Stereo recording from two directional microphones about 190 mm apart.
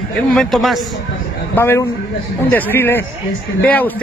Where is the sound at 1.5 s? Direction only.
10° left (ahead or behind).